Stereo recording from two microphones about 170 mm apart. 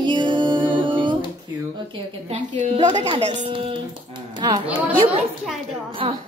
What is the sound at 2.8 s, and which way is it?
Music, 25° right (ahead or behind).